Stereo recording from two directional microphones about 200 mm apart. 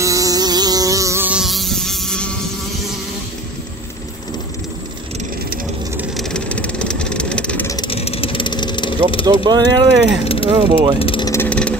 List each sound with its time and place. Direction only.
0.0 s insect: 15° right (ahead or behind); by 2.3 s 5° left (ahead or behind)
5.9 s vehicle: centre (ahead or behind)
7.7 s vehicle: 25° left (ahead or behind)
9.2 s speech: 20° right (ahead or behind)
10.2 s mechanisms: 30° left (ahead or behind)
10.5 s speech: 20° right (ahead or behind)
11.0 s vehicle: 25° left (ahead or behind)
11.4 s vehicle: 5° left (ahead or behind)